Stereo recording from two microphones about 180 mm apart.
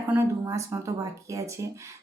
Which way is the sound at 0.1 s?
15° right (ahead or behind).